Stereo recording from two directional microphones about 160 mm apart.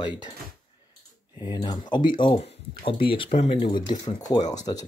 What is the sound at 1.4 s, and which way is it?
Speech, 25° left (ahead or behind).